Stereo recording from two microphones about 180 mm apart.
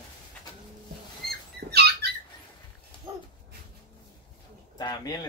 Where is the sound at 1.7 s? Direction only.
60° right (ahead or behind).